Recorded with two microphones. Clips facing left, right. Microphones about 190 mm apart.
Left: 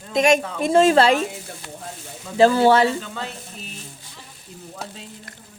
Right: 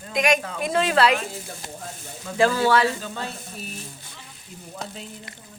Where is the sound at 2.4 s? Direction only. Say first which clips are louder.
Left 5 dB; 25° left (ahead or behind).